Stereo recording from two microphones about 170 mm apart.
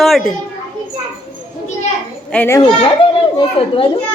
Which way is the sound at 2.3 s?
10° left (ahead or behind).